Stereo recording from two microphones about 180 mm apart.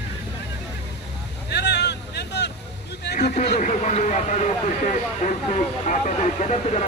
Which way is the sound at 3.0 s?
65° left (ahead or behind).